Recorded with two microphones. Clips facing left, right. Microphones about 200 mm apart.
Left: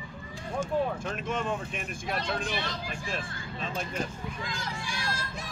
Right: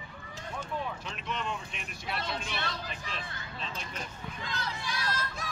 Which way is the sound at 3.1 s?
45° left (ahead or behind).